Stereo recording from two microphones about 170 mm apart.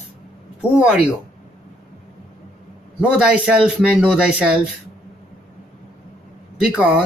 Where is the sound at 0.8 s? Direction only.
5° right (ahead or behind).